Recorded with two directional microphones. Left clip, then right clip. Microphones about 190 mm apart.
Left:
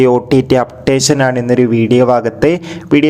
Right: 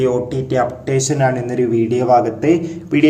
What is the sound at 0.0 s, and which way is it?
A man's voice, 45° left (ahead or behind).